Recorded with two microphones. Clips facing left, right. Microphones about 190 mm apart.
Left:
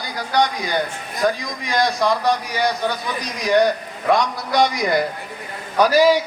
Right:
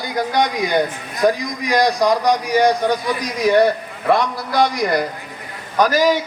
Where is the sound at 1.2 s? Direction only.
15° right (ahead or behind).